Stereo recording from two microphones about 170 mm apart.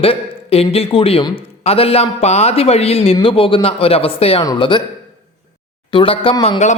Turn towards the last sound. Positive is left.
turn(degrees=40)  # may be behind; listen again after turning